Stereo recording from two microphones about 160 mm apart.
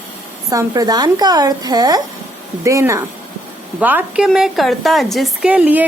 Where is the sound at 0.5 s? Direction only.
25° right (ahead or behind).